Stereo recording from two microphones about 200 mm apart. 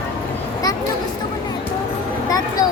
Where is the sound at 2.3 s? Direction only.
20° left (ahead or behind).